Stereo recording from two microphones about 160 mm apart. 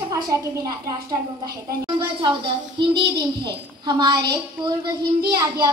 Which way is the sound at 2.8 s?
30° right (ahead or behind).